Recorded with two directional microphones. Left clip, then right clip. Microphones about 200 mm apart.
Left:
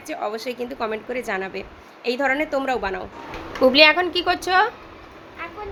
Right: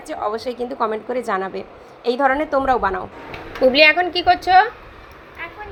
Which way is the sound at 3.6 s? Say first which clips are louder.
Right 1 dB; 10° left (ahead or behind).